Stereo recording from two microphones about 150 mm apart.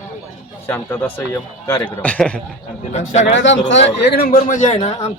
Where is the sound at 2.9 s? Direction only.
50° left (ahead or behind).